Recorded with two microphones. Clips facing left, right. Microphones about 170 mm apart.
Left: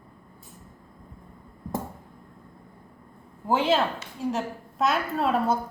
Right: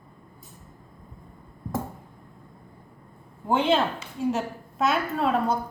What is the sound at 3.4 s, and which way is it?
A woman's voice, centre (ahead or behind).